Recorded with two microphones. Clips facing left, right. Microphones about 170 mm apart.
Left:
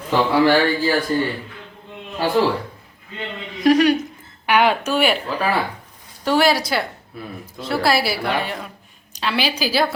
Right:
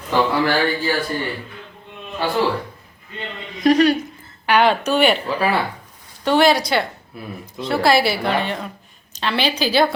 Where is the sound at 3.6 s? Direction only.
10° left (ahead or behind).